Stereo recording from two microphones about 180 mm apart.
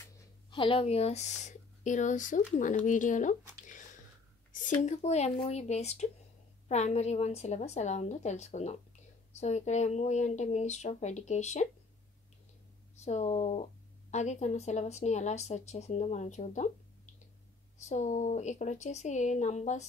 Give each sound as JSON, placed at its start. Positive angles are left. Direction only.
{"t": 0.5, "sound": "speech", "side_deg": 30}
{"t": 13.0, "sound": "speech", "side_deg": 40}